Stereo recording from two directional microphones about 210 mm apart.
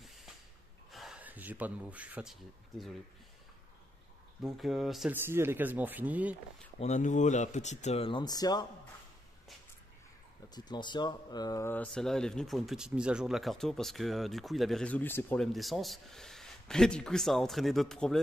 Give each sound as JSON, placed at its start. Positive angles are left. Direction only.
{"t": 0.0, "sound": "a sound", "side_deg": 0}
{"t": 0.9, "sound": "speech", "side_deg": -5}
{"t": 4.4, "sound": "speech", "side_deg": 0}
{"t": 6.8, "sound": "speech", "side_deg": 35}
{"t": 10.5, "sound": "speech", "side_deg": 20}